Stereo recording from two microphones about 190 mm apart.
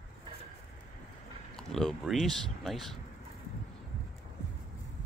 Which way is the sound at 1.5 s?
Centre (ahead or behind).